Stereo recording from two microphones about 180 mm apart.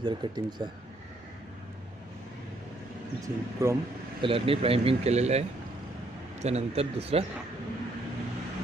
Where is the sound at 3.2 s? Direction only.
15° right (ahead or behind).